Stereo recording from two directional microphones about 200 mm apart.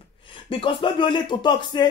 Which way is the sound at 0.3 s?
25° left (ahead or behind).